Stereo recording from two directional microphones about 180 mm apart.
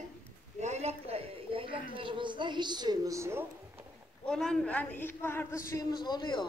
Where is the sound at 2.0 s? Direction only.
30° right (ahead or behind).